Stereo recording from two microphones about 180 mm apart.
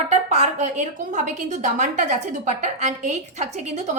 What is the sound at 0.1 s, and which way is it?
A woman's voice, 40° right (ahead or behind).